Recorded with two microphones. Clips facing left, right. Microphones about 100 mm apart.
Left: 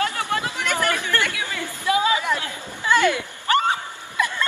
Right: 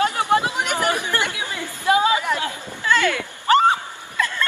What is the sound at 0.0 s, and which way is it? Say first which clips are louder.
Chatter: right 5 dB; 20° right (ahead or behind).